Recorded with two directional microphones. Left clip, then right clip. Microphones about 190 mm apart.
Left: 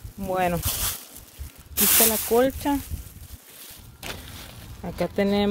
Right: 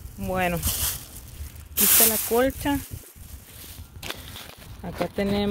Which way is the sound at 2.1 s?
10° left (ahead or behind).